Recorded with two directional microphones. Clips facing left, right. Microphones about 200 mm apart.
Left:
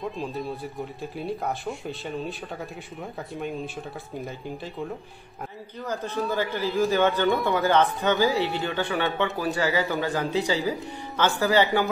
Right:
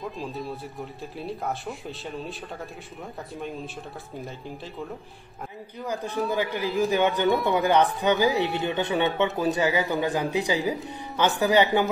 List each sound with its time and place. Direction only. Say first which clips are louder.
0.0 s speech: left 2 dB; centre (ahead or behind)
6.3 s speech: left 1 dB; 15° right (ahead or behind)